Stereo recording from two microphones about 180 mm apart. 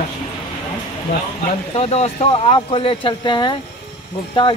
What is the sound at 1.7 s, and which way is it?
Speech, 35° left (ahead or behind).